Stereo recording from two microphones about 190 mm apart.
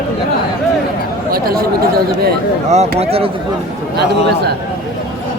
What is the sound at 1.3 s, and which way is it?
Speech, 50° right (ahead or behind).